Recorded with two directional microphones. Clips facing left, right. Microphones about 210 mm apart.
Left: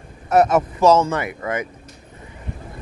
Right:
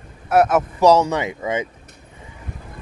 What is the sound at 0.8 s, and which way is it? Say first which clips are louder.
Speech: right 1 dB; 15° right (ahead or behind).